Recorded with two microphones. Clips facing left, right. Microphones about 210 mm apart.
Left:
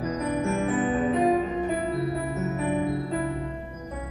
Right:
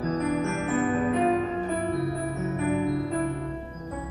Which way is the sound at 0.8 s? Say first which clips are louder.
Even; 30° left (ahead or behind).